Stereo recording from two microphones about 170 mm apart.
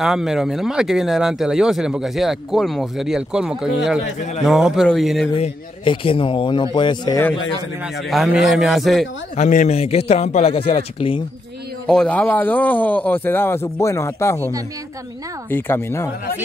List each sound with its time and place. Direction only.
0.0 s speech: centre (ahead or behind)
5.3 s a man's voice: 30° left (ahead or behind)
7.8 s speech: 5° right (ahead or behind)
9.4 s a man's voice: 45° left (ahead or behind)
11.9 s a man's voice: 5° left (ahead or behind)
15.5 s a man's voice: 15° left (ahead or behind)